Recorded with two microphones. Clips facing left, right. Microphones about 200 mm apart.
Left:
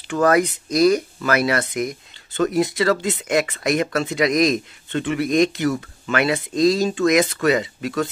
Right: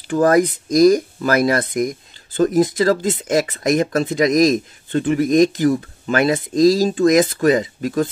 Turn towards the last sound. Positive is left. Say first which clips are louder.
# right 3 dB
turn(degrees=-45)  # may be behind; listen again after turning